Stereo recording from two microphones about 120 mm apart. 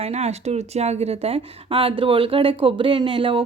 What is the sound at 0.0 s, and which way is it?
Speech, 65° right (ahead or behind).